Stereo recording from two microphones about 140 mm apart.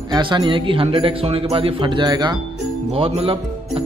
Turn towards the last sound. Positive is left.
turn(degrees=-40)  # may be behind; listen again after turning